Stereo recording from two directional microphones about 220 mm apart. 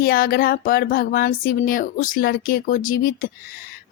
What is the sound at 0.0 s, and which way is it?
Speech, 40° left (ahead or behind).